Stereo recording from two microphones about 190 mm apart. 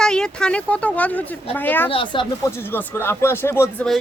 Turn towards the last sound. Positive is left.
turn(degrees=5)  # may be behind; listen again after turning